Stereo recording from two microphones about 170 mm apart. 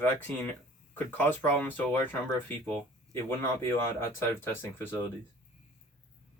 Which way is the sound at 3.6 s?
15° left (ahead or behind).